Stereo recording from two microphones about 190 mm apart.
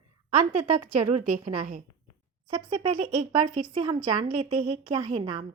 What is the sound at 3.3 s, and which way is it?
A woman's voice, 25° right (ahead or behind).